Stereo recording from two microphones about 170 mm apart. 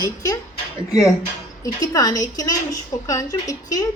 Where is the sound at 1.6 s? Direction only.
20° left (ahead or behind).